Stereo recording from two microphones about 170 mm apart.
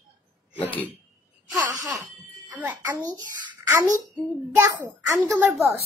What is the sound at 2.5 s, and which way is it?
Speech, 10° right (ahead or behind).